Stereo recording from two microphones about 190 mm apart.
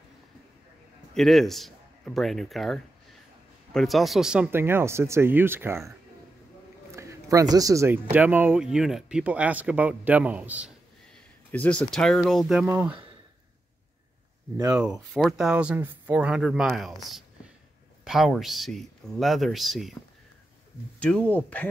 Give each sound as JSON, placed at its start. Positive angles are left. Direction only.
{"t": 1.1, "sound": "a man's voice", "side_deg": 0}
{"t": 6.9, "sound": "a sound", "side_deg": -15}
{"t": 7.5, "sound": "speech", "side_deg": -15}
{"t": 11.5, "sound": "speech", "side_deg": 5}
{"t": 12.6, "sound": "speech", "side_deg": -10}
{"t": 15.1, "sound": "speech", "side_deg": 0}
{"t": 21.0, "sound": "speech", "side_deg": 5}